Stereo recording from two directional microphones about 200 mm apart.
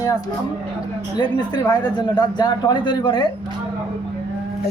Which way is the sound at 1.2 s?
20° left (ahead or behind).